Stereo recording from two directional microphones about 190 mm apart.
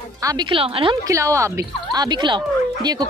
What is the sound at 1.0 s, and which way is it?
Speech, 15° right (ahead or behind).